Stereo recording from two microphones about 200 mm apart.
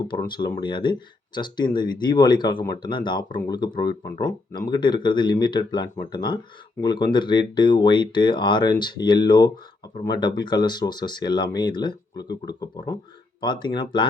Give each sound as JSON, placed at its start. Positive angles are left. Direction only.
{"t": 0.1, "sound": "speech", "side_deg": 20}